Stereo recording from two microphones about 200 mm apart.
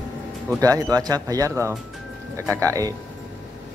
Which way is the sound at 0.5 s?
15° right (ahead or behind).